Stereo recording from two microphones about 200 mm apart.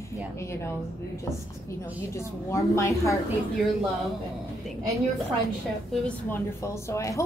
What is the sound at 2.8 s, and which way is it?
Speech, 15° left (ahead or behind).